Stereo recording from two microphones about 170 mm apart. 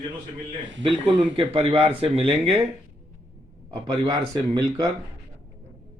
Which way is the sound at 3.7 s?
25° right (ahead or behind).